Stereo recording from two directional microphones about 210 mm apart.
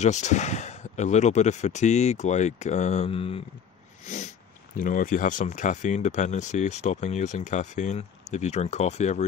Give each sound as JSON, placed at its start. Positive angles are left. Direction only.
{"t": 0.0, "sound": "speech", "side_deg": 35}
{"t": 4.0, "sound": "cat", "side_deg": 35}
{"t": 4.7, "sound": "speech", "side_deg": 40}